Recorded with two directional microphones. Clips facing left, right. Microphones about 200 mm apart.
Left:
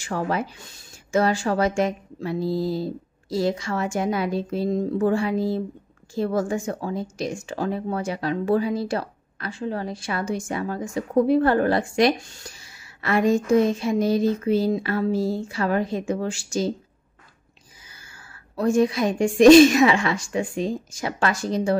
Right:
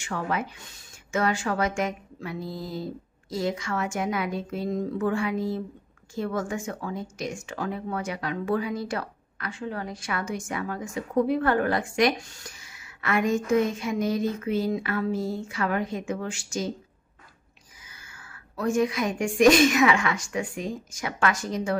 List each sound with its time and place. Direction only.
0.0 s speech: 35° left (ahead or behind)
17.8 s speech: 30° left (ahead or behind)